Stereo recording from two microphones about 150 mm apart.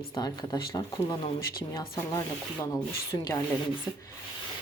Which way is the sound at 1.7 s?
20° left (ahead or behind).